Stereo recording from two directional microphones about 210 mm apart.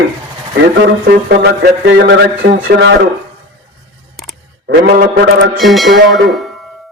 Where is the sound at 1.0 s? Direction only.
50° right (ahead or behind).